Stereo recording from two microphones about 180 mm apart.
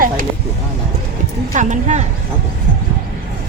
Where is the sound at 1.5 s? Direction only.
40° right (ahead or behind).